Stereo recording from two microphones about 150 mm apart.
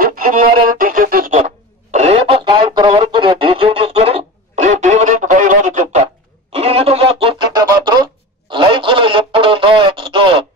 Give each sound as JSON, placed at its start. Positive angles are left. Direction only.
{"t": 0.0, "sound": "music", "side_deg": -70}
{"t": 1.9, "sound": "music", "side_deg": -45}
{"t": 4.6, "sound": "music", "side_deg": -55}
{"t": 6.5, "sound": "a sound", "side_deg": -40}